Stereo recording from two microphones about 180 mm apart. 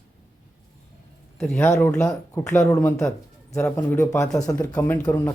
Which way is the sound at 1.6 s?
15° left (ahead or behind).